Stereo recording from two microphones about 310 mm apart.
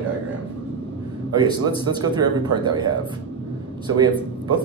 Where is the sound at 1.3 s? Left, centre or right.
Centre.